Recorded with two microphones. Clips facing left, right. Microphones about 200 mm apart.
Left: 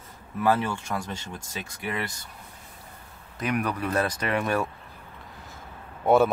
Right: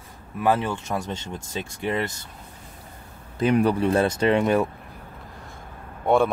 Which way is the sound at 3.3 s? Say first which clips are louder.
Right 8 dB; 30° right (ahead or behind).